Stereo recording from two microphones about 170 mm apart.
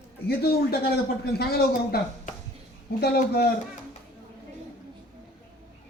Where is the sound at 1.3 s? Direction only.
65° left (ahead or behind).